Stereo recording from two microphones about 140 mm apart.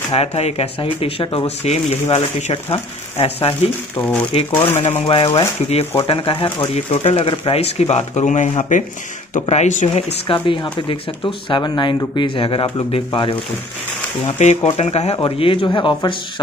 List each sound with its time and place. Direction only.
0.1 s speech: 45° left (ahead or behind)
1.6 s speech: 50° left (ahead or behind)
3.9 s speech: 10° left (ahead or behind)
4.3 s speech: 45° left (ahead or behind)
10.2 s speech: 35° left (ahead or behind)
14.2 s speech: 55° left (ahead or behind); by 16.2 s 35° left (ahead or behind)